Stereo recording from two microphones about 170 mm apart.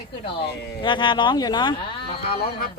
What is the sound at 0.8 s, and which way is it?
Speech, 25° left (ahead or behind).